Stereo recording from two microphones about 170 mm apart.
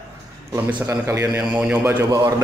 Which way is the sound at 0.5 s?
15° right (ahead or behind).